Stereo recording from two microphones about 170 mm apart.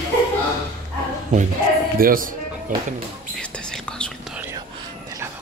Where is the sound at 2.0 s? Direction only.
55° right (ahead or behind).